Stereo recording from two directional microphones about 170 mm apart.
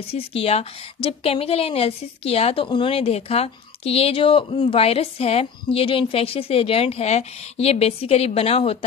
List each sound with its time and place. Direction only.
0.1 s a woman's voice: 35° left (ahead or behind)